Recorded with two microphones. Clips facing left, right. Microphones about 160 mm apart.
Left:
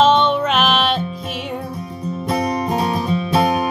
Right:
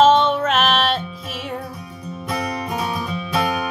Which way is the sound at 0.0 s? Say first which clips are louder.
Even; 5° right (ahead or behind).